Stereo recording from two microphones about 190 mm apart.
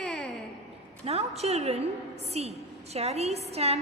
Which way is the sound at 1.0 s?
35° right (ahead or behind).